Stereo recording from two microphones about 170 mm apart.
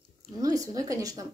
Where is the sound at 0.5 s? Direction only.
20° right (ahead or behind).